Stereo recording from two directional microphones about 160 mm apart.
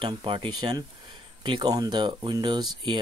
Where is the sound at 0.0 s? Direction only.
30° right (ahead or behind).